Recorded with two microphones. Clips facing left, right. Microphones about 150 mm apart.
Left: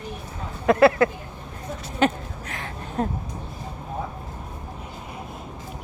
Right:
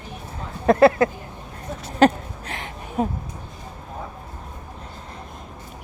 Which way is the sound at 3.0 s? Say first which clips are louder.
Right 2 dB; 10° right (ahead or behind).